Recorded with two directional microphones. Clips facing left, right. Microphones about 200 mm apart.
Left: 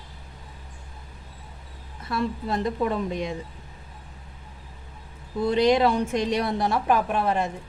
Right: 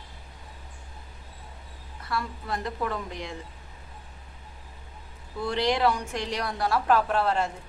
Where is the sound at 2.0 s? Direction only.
25° left (ahead or behind).